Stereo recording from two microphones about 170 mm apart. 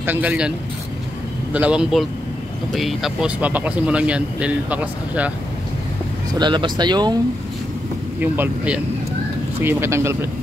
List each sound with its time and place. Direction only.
0.0 s speech: 10° right (ahead or behind)
6.3 s speech: 25° right (ahead or behind)
8.2 s speech: 10° right (ahead or behind)